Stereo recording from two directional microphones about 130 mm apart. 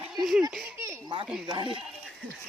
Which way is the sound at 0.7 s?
20° right (ahead or behind).